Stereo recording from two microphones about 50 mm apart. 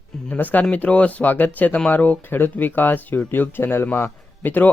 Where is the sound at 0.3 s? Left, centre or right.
Left.